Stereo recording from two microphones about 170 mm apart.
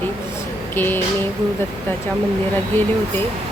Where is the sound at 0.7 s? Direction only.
10° left (ahead or behind).